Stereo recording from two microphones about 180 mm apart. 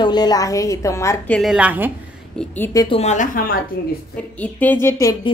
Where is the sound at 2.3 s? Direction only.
5° left (ahead or behind).